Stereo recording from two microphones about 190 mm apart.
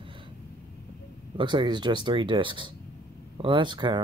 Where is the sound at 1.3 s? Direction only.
25° right (ahead or behind).